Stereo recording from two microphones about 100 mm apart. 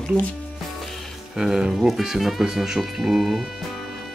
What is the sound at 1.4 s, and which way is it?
Speech, 5° right (ahead or behind).